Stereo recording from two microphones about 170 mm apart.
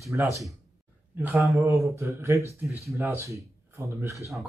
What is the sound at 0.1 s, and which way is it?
Speech, 10° right (ahead or behind).